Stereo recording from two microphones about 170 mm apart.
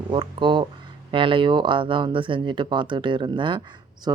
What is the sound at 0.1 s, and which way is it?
Speech, 30° right (ahead or behind).